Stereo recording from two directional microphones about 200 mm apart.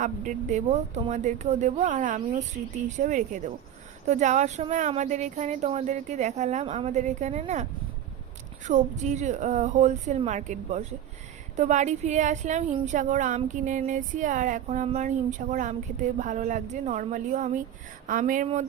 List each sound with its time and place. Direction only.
0.0 s a woman's voice: 40° right (ahead or behind)